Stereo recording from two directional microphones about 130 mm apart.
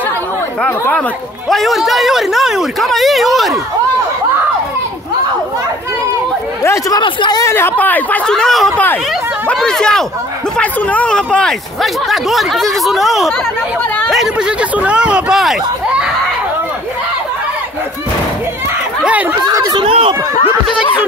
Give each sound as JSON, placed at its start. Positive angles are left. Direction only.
{"t": 0.6, "sound": "speech", "side_deg": 10}
{"t": 1.5, "sound": "speech", "side_deg": 0}
{"t": 6.6, "sound": "speech", "side_deg": 25}
{"t": 7.0, "sound": "a woman's voice", "side_deg": 35}
{"t": 7.4, "sound": "speech", "side_deg": 15}
{"t": 19.4, "sound": "chatter", "side_deg": -30}
{"t": 19.9, "sound": "chatter", "side_deg": -45}